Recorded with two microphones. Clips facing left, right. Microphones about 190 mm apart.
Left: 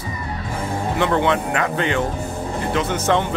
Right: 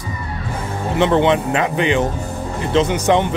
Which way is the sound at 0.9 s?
20° right (ahead or behind).